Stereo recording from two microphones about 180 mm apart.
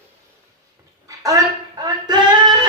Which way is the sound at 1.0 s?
20° right (ahead or behind).